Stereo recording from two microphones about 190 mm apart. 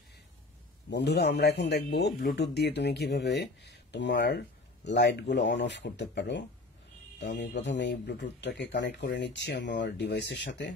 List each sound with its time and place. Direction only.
0.8 s speech: 60° left (ahead or behind)